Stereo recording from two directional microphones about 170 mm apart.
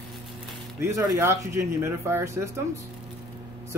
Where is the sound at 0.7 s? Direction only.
15° right (ahead or behind).